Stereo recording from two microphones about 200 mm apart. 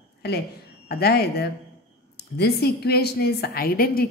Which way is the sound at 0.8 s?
50° left (ahead or behind).